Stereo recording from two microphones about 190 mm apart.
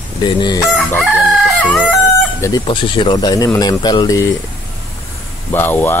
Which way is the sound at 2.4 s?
25° left (ahead or behind).